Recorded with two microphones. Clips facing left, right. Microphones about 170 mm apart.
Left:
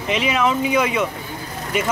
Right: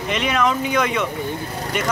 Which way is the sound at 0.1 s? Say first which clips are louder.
Left 1 dB; 5° left (ahead or behind).